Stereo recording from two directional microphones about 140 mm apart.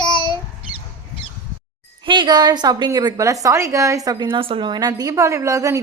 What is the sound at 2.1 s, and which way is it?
A woman's voice, 35° right (ahead or behind).